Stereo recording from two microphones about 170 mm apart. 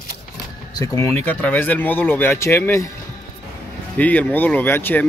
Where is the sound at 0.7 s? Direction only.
20° left (ahead or behind).